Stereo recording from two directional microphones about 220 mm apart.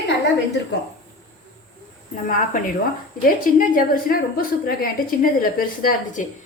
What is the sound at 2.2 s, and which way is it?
A woman's voice, 40° left (ahead or behind).